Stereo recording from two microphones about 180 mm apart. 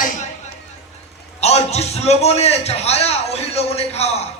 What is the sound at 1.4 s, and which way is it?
A man's voice, 35° left (ahead or behind).